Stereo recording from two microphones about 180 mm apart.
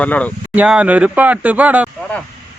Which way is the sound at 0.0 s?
10° left (ahead or behind).